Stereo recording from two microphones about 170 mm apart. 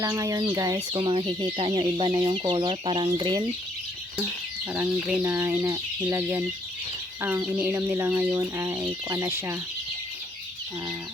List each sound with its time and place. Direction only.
0.0 s speech: 20° right (ahead or behind)
5.2 s speech: 15° right (ahead or behind)